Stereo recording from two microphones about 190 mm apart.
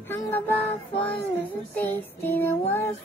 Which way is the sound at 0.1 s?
10° left (ahead or behind).